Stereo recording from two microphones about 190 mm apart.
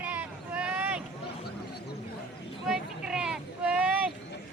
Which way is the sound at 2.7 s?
5° right (ahead or behind).